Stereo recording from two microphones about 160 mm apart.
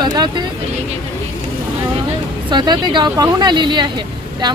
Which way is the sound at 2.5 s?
30° right (ahead or behind).